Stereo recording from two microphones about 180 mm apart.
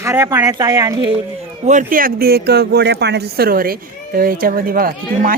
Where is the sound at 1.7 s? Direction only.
45° right (ahead or behind).